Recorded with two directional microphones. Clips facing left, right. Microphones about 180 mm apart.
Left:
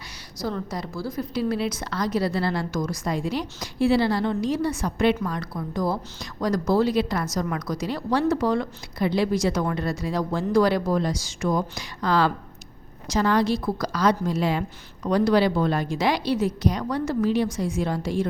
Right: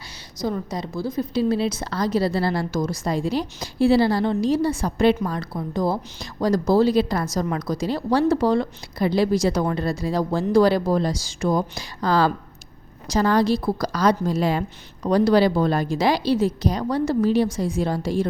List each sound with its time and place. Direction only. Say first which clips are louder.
0.4 s a woman's voice: right 3 dB; 20° right (ahead or behind); by 18.3 s 35° right (ahead or behind)